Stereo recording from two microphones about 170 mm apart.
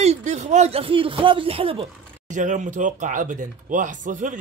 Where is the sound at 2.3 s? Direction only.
45° right (ahead or behind).